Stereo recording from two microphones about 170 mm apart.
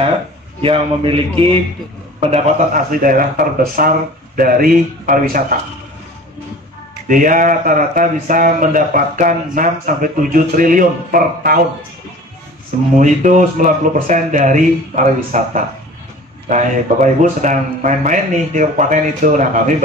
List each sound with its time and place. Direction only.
0.6 s a man's voice: 35° right (ahead or behind); by 5.4 s 55° right (ahead or behind)
7.1 s speech: 50° right (ahead or behind)
12.9 s speech: 45° right (ahead or behind)